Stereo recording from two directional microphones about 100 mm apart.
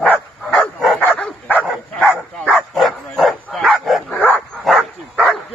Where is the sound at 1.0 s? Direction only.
15° left (ahead or behind).